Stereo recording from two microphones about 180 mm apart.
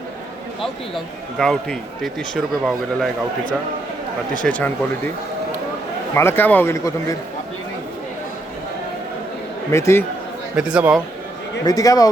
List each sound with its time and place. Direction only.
0.6 s speech: centre (ahead or behind)
4.4 s speech: 5° left (ahead or behind)
6.1 s speech: 10° left (ahead or behind)
9.7 s speech: 15° left (ahead or behind)
10.5 s speech: 5° right (ahead or behind)
11.6 s speech: 20° left (ahead or behind)